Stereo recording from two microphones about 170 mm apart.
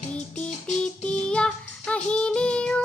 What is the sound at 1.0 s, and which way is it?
Music, 5° left (ahead or behind).